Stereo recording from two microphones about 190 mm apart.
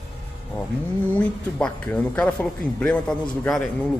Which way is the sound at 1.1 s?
10° left (ahead or behind).